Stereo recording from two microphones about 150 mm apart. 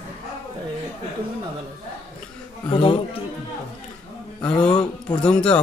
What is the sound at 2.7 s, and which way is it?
Speech, 35° left (ahead or behind).